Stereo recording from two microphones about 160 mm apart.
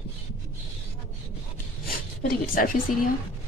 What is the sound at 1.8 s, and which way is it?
Zipper, 60° left (ahead or behind).